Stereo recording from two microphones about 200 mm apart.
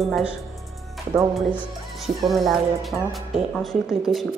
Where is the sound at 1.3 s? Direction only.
10° left (ahead or behind).